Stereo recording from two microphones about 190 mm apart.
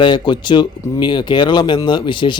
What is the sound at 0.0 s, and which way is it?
Speech, 25° left (ahead or behind).